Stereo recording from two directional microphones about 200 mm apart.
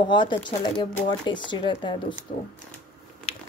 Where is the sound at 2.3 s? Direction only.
40° left (ahead or behind).